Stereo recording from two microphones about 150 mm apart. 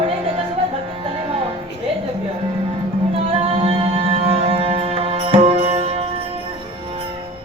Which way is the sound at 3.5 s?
40° right (ahead or behind).